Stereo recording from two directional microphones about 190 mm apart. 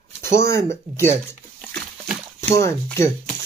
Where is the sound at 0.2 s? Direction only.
15° left (ahead or behind).